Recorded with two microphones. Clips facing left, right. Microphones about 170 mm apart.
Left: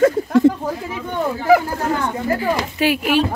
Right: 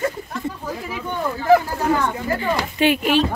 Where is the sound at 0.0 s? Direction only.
90° left.